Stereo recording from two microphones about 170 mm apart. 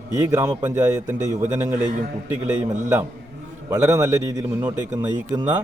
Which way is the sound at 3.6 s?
20° right (ahead or behind).